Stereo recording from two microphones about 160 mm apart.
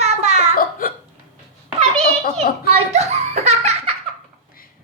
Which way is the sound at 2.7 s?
45° right (ahead or behind).